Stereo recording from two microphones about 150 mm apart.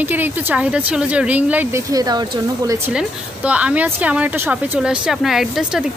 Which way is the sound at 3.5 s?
10° right (ahead or behind).